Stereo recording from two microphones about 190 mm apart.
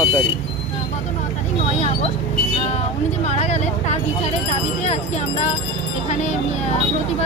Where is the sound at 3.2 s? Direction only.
35° left (ahead or behind).